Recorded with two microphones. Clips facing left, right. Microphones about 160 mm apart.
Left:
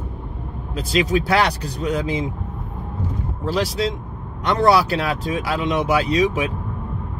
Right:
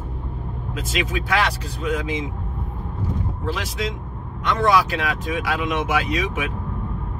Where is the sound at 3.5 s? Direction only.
35° left (ahead or behind).